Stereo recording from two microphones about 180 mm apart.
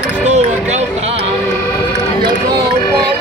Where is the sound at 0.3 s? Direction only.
40° right (ahead or behind).